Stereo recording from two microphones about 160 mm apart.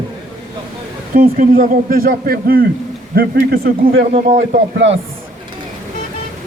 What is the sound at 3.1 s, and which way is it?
Speech, 85° right.